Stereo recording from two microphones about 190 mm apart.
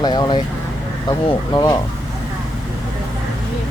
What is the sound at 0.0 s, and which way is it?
Speech, 20° left (ahead or behind).